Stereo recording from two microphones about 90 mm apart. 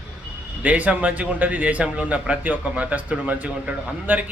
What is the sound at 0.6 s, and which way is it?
A man's voice, 15° right (ahead or behind).